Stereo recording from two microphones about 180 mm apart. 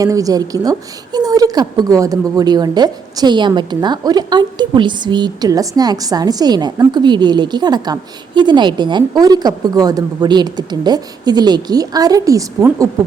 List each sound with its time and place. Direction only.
0.0 s a woman's voice: 20° right (ahead or behind)